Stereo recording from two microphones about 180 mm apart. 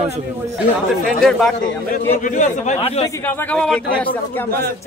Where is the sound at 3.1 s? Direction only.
15° left (ahead or behind).